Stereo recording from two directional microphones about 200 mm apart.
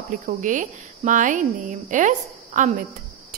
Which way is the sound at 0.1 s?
40° right (ahead or behind).